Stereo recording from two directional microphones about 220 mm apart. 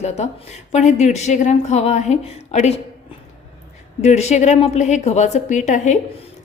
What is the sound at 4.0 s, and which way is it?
A woman's voice, 30° left (ahead or behind).